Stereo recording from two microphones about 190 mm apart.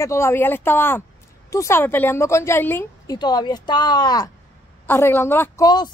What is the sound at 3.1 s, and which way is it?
Speech, 20° left (ahead or behind).